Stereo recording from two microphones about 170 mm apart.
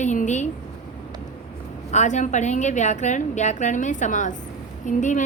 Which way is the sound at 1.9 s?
45° left (ahead or behind).